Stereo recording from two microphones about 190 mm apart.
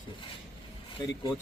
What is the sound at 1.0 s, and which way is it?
Speech, 20° left (ahead or behind).